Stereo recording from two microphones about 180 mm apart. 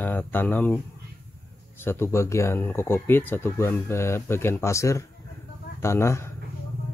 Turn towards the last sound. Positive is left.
turn(degrees=15)  # may be behind; listen again after turning